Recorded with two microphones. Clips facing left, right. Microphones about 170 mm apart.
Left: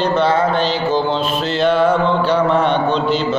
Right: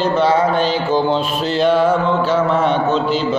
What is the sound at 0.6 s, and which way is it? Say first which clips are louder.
Speech: right 1 dB; 45° right (ahead or behind).